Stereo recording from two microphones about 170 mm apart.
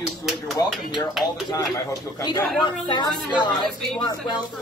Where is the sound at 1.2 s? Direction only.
Centre (ahead or behind).